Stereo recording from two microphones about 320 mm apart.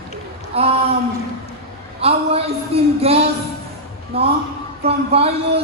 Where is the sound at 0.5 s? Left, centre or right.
Centre.